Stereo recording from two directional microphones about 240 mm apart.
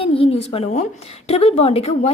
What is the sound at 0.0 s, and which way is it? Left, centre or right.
A woman's voice, left.